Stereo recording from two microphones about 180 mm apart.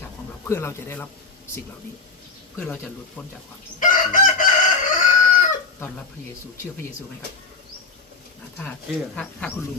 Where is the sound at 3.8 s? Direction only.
45° left (ahead or behind).